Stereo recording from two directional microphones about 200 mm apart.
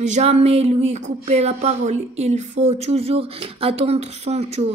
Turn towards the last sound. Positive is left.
turn(degrees=-30)  # may be behind; listen again after turning